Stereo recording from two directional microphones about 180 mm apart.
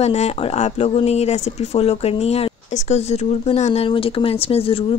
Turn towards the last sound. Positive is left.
turn(degrees=30)  # may be behind; listen again after turning